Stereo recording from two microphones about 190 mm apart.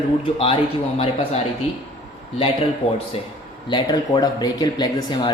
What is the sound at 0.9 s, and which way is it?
Speech, 30° left (ahead or behind).